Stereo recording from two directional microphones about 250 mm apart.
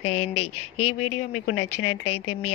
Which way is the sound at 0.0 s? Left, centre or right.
Left.